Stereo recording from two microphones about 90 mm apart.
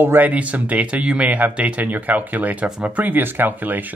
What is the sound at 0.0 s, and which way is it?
Speech, 20° right (ahead or behind).